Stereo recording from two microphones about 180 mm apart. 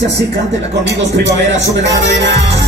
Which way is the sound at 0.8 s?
70° right (ahead or behind).